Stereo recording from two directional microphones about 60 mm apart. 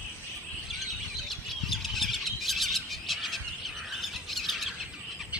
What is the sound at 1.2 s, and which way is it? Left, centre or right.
Bird, centre.